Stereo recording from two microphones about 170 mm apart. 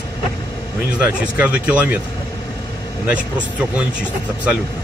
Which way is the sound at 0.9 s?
5° right (ahead or behind).